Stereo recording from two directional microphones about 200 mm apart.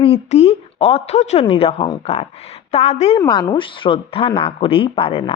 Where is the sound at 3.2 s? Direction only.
20° left (ahead or behind).